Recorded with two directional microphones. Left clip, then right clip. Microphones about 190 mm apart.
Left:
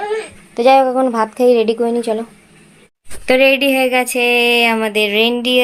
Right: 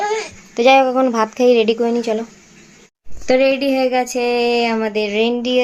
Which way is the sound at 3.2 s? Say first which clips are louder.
Left 3 dB; 5° left (ahead or behind).